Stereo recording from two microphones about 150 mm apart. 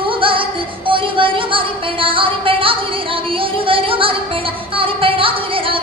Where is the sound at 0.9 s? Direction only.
35° right (ahead or behind).